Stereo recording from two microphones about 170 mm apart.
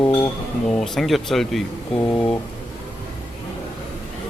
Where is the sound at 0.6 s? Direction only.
5° left (ahead or behind).